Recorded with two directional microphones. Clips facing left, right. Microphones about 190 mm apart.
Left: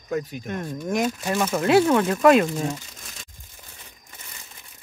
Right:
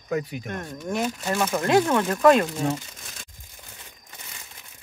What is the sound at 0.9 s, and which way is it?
Speech, 10° left (ahead or behind).